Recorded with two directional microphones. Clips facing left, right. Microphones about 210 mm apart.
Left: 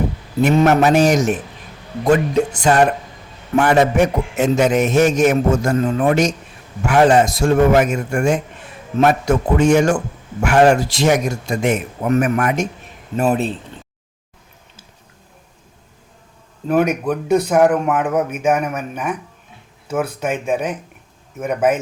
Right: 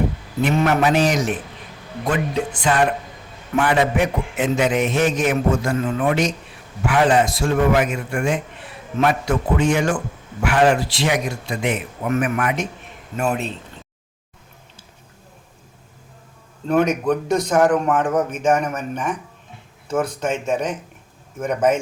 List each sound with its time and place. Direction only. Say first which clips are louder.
0.4 s a man's voice: left 5 dB; 45° left (ahead or behind)
16.6 s a man's voice: left 1 dB; 10° left (ahead or behind)